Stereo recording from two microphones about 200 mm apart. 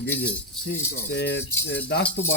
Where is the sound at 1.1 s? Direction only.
55° left (ahead or behind).